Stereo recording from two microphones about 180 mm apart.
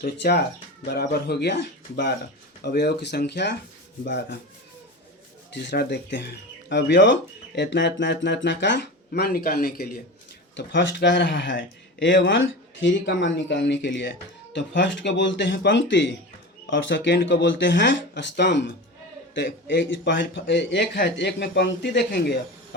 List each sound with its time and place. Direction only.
0.0 s speech: 65° left (ahead or behind)
5.5 s speech: 65° left (ahead or behind)
10.5 s speech: 85° left